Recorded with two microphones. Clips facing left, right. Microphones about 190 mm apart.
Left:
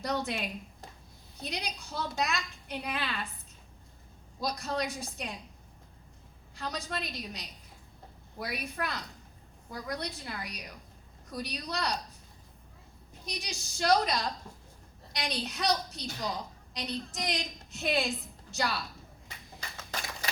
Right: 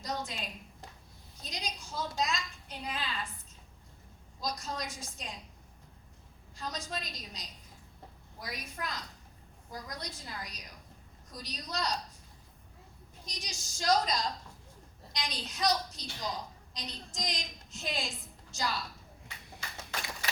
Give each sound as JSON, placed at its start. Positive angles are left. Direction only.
{"t": 0.0, "sound": "a woman's voice", "side_deg": 65}
{"t": 4.4, "sound": "a woman's voice", "side_deg": 65}
{"t": 6.6, "sound": "a woman's voice", "side_deg": 65}
{"t": 13.2, "sound": "a woman's voice", "side_deg": 65}